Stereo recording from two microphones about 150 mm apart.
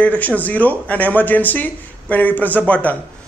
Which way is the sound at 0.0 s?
10° left (ahead or behind).